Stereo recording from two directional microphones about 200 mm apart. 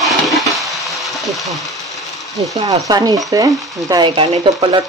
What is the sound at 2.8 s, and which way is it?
Speech, 20° right (ahead or behind).